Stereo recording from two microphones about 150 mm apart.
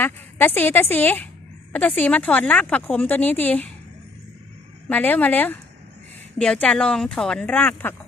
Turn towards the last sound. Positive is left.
turn(degrees=10)  # may be behind; listen again after turning